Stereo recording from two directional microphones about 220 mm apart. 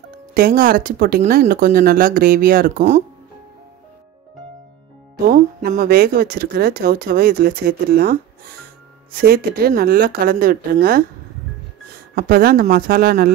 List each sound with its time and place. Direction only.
0.3 s speech: 40° right (ahead or behind)
5.3 s speech: 40° right (ahead or behind)
12.2 s speech: 40° right (ahead or behind)